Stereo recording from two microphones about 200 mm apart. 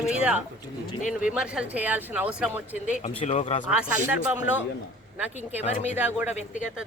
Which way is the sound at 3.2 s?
35° left (ahead or behind).